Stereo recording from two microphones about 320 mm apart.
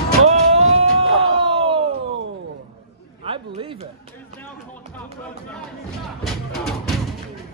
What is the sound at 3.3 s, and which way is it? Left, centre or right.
Chatter, centre.